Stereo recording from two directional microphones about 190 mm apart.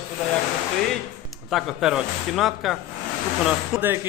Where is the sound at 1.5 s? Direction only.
Centre (ahead or behind).